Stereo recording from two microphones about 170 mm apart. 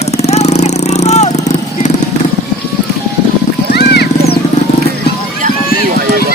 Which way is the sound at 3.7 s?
70° left (ahead or behind).